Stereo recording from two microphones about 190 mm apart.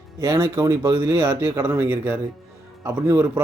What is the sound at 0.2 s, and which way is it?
Speech, 15° right (ahead or behind).